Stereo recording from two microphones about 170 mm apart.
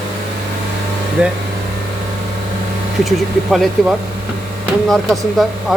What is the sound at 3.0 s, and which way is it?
Speech, centre (ahead or behind).